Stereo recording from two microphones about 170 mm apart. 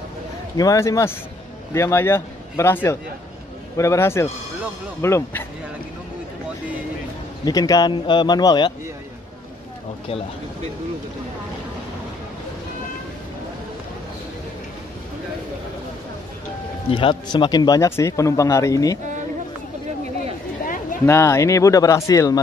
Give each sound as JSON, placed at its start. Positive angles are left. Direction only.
{"t": 0.6, "sound": "speech", "side_deg": 20}
{"t": 7.4, "sound": "speech", "side_deg": 20}
{"t": 16.9, "sound": "speech", "side_deg": 30}
{"t": 21.0, "sound": "speech", "side_deg": 15}